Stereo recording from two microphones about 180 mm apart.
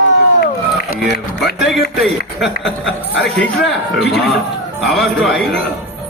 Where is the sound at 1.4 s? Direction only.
Centre (ahead or behind).